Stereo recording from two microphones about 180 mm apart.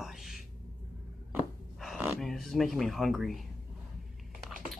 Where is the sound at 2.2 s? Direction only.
Centre (ahead or behind).